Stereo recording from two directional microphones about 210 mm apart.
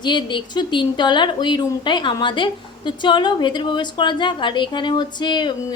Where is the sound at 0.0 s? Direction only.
20° left (ahead or behind).